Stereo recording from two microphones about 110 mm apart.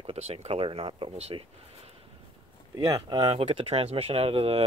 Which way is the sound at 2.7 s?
40° right (ahead or behind).